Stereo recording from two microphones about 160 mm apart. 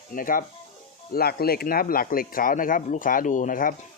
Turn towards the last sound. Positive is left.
turn(degrees=60)  # may be behind; listen again after turning